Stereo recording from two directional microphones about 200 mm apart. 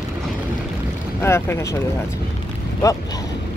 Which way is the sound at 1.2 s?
10° left (ahead or behind).